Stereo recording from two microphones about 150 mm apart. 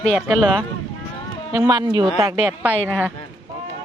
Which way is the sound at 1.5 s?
25° right (ahead or behind).